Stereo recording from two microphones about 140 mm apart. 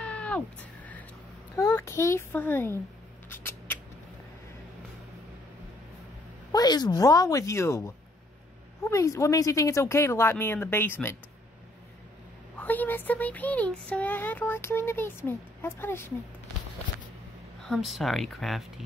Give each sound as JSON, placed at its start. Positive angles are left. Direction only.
{"t": 0.0, "sound": "cat", "side_deg": 10}
{"t": 1.6, "sound": "speech", "side_deg": 20}
{"t": 3.3, "sound": "a sound", "side_deg": 15}
{"t": 6.5, "sound": "speech", "side_deg": 30}
{"t": 12.5, "sound": "speech", "side_deg": 15}
{"t": 17.6, "sound": "speech", "side_deg": 0}